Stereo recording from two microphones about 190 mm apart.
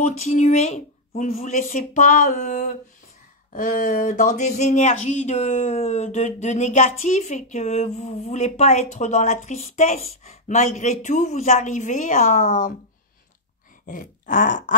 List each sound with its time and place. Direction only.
0.0 s speech: 35° left (ahead or behind)
13.8 s groan: 45° left (ahead or behind)